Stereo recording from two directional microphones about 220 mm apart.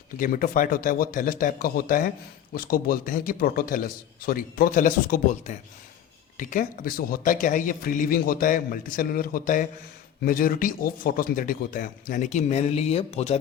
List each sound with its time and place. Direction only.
0.2 s a man's voice: 40° left (ahead or behind)